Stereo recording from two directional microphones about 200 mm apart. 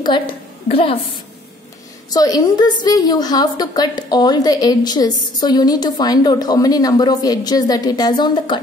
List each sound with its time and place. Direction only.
0.7 s a woman's voice: 30° left (ahead or behind)
2.0 s a woman's voice: 20° left (ahead or behind)